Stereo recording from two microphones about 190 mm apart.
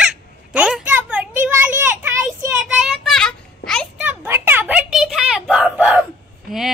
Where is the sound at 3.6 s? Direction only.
Centre (ahead or behind).